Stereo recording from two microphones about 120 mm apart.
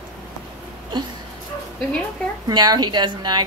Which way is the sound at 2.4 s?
35° right (ahead or behind).